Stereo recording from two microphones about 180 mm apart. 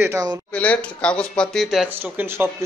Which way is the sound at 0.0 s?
20° right (ahead or behind).